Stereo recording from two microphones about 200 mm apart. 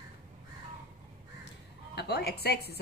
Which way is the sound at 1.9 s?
55° left (ahead or behind).